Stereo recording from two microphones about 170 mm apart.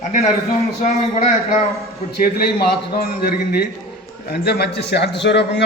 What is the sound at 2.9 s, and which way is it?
A man's voice, 70° left (ahead or behind).